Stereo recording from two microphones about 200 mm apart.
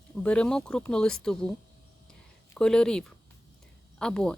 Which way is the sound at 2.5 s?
5° left (ahead or behind).